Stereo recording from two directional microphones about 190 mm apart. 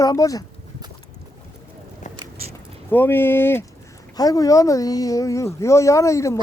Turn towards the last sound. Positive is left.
turn(degrees=15)  # may be behind; listen again after turning